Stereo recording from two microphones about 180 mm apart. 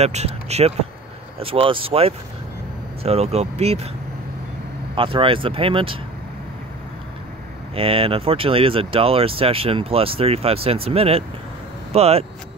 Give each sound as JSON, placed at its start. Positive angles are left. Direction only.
{"t": 0.0, "sound": "speech", "side_deg": -35}
{"t": 4.9, "sound": "speech", "side_deg": -30}
{"t": 7.7, "sound": "speech", "side_deg": -30}